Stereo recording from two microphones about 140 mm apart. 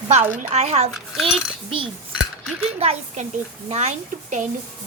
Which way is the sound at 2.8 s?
45° right (ahead or behind).